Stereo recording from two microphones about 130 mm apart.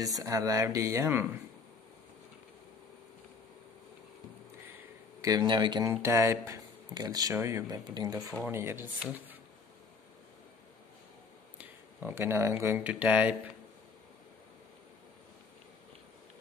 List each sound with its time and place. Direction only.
0.0 s speech: 25° right (ahead or behind)
5.2 s speech: 30° right (ahead or behind)
5.9 s speech: 20° right (ahead or behind)
8.4 s speech: 20° right (ahead or behind)
11.5 s speech: 15° right (ahead or behind)